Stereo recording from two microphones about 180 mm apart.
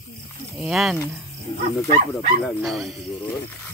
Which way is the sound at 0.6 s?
Centre (ahead or behind).